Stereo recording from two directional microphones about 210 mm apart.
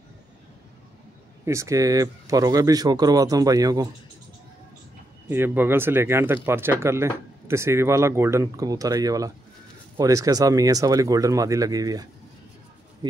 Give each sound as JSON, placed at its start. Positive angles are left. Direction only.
{"t": 1.4, "sound": "speech", "side_deg": -15}
{"t": 5.3, "sound": "speech", "side_deg": -10}